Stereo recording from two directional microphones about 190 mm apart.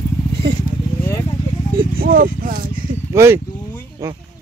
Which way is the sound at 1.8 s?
50° right (ahead or behind).